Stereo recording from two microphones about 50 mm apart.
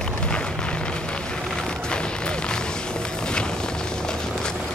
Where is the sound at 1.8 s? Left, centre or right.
Centre.